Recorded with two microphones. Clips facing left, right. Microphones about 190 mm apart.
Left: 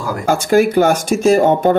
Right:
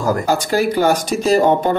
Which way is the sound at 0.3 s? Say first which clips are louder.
Left 9 dB; 50° left (ahead or behind).